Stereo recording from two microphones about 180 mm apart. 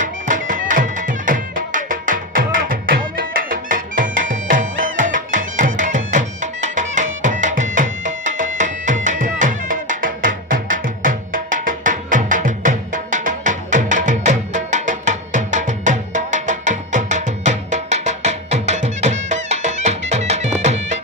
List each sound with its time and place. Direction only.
0.0 s music: 45° right (ahead or behind)